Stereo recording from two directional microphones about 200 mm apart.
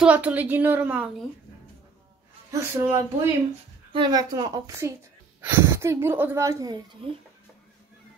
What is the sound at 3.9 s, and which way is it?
A woman's voice, 20° right (ahead or behind).